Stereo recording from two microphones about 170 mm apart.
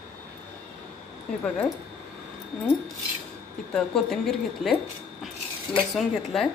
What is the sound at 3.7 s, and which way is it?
A woman's voice, 5° left (ahead or behind).